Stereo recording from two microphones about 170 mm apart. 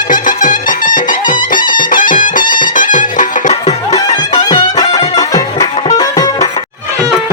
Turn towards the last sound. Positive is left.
turn(degrees=20)  # may be behind; listen again after turning